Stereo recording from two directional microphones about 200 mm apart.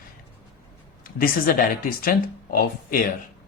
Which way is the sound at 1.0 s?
45° left (ahead or behind).